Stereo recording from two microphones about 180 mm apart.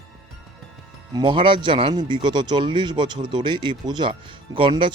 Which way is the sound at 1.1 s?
30° right (ahead or behind).